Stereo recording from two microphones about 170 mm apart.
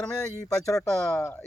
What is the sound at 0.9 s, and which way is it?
Speech, centre (ahead or behind).